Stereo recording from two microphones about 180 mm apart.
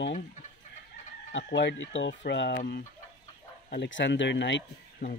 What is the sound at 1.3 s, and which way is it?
Speech, 85° left.